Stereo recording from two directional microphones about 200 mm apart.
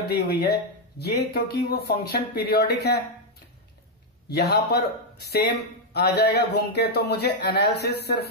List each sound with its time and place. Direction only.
0.1 s speech: 55° left (ahead or behind)
4.3 s speech: 55° left (ahead or behind)